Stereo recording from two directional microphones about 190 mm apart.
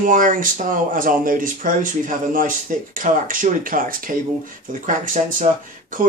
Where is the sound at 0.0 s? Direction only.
45° right (ahead or behind).